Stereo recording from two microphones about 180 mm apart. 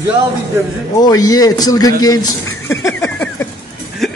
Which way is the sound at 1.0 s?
20° left (ahead or behind).